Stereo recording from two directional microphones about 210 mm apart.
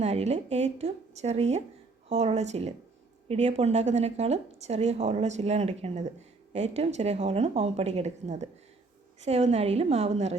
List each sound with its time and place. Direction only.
0.0 s speech: 30° right (ahead or behind)